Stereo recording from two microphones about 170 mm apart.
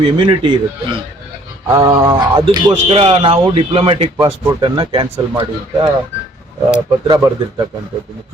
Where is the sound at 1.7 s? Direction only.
20° right (ahead or behind).